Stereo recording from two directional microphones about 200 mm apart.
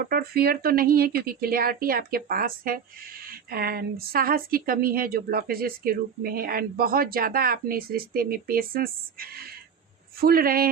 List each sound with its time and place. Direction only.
0.0 s speech: 50° right (ahead or behind)